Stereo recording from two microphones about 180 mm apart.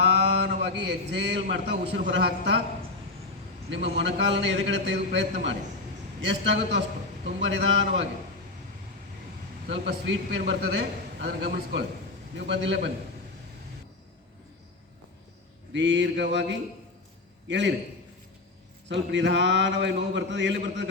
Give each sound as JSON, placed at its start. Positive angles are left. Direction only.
{"t": 0.0, "sound": "a man's voice", "side_deg": -70}
{"t": 3.7, "sound": "a man's voice", "side_deg": -85}
{"t": 9.6, "sound": "a man's voice", "side_deg": -80}
{"t": 12.5, "sound": "a man's voice", "side_deg": -75}
{"t": 15.7, "sound": "a man's voice", "side_deg": -80}
{"t": 18.9, "sound": "a man's voice", "side_deg": -80}